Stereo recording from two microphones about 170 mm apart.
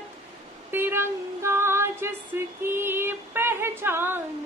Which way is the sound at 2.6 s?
15° right (ahead or behind).